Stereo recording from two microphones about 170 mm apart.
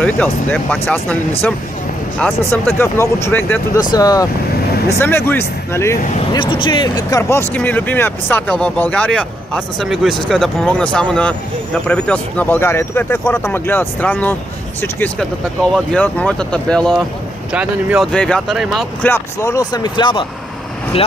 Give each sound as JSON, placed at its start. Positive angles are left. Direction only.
{"t": 0.0, "sound": "speech", "side_deg": 10}
{"t": 2.1, "sound": "speech", "side_deg": 5}
{"t": 6.3, "sound": "speech", "side_deg": 30}
{"t": 17.5, "sound": "speech", "side_deg": -5}
{"t": 18.0, "sound": "speech", "side_deg": 5}
{"t": 19.0, "sound": "speech", "side_deg": 15}